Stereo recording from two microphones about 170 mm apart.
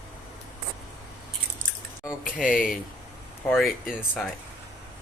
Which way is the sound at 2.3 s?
5° left (ahead or behind).